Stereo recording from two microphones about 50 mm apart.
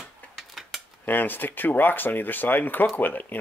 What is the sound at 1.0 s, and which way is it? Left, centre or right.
Speech, left.